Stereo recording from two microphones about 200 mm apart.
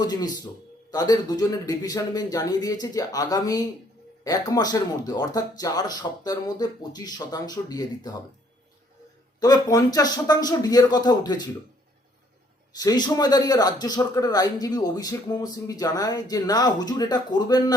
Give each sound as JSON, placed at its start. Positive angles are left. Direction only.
{"t": 0.0, "sound": "speech", "side_deg": 20}
{"t": 9.4, "sound": "speech", "side_deg": 20}
{"t": 12.7, "sound": "speech", "side_deg": 20}